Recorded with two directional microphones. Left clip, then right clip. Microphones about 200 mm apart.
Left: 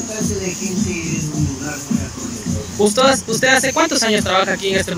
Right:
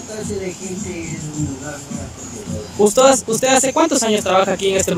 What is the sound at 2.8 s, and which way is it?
Speech, 15° right (ahead or behind).